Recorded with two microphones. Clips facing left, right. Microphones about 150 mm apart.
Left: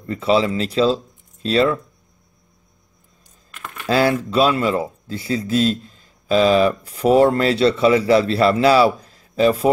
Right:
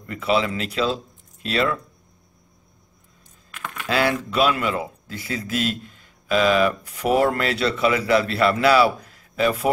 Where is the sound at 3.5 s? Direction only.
Centre (ahead or behind).